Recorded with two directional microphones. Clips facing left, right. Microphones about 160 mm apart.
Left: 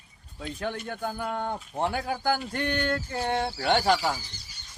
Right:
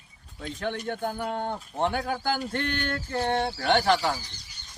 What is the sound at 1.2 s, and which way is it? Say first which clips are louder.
Speech: right 1 dB; 20° right (ahead or behind).